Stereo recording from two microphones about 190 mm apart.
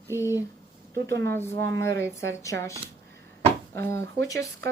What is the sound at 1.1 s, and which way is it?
Speech, 15° left (ahead or behind).